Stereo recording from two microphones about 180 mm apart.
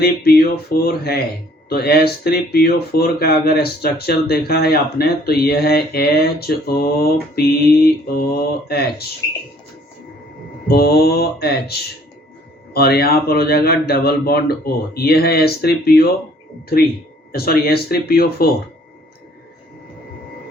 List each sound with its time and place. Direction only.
0.0 s speech: 55° left (ahead or behind)
10.7 s speech: 60° left (ahead or behind)
17.3 s speech: 55° left (ahead or behind)